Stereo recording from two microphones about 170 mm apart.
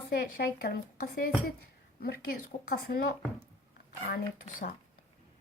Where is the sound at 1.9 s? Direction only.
65° left (ahead or behind).